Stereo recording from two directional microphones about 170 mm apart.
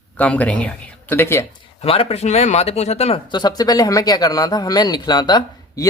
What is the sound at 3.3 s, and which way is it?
Speech, 25° left (ahead or behind).